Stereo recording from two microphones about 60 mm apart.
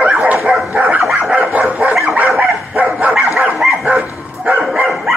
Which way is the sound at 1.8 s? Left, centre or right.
Right.